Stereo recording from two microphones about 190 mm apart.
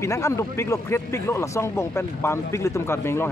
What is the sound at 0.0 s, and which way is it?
Speech, 15° left (ahead or behind).